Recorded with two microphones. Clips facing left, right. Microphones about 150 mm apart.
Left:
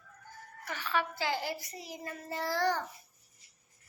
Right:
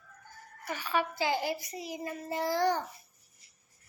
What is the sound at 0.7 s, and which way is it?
A child's voice, 15° right (ahead or behind).